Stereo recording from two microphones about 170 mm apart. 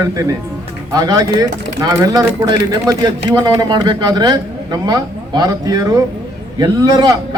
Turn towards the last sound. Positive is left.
turn(degrees=-20)  # may be behind; listen again after turning